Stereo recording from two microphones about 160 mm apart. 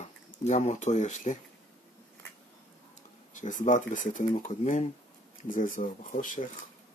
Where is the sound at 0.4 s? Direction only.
50° left (ahead or behind).